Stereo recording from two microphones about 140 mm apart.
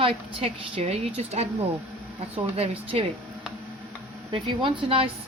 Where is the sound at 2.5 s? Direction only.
45° right (ahead or behind).